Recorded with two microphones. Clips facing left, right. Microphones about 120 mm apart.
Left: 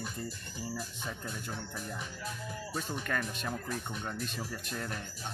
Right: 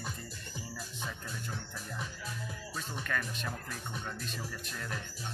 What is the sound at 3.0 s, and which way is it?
Speech, 35° left (ahead or behind).